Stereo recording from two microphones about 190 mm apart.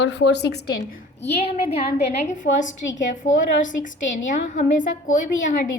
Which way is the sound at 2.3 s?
40° left (ahead or behind).